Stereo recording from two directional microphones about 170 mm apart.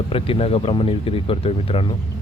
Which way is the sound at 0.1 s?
35° left (ahead or behind).